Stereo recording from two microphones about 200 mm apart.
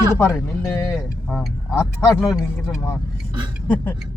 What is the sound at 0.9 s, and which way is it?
Speech, centre (ahead or behind).